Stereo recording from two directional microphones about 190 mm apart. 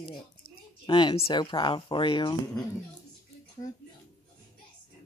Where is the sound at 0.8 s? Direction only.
25° left (ahead or behind).